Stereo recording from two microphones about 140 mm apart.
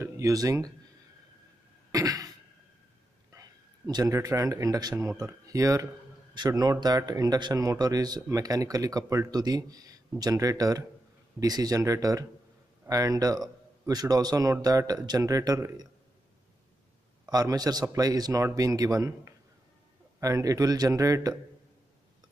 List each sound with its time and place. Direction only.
0.0 s speech: 25° right (ahead or behind)
1.9 s cough: 25° right (ahead or behind)
3.3 s a man's voice: 25° right (ahead or behind)
17.3 s a man's voice: 25° right (ahead or behind)